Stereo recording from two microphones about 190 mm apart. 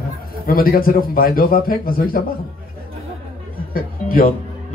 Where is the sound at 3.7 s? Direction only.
50° left (ahead or behind).